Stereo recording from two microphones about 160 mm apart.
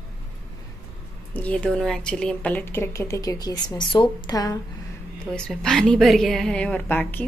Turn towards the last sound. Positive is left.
turn(degrees=10)  # may be behind; listen again after turning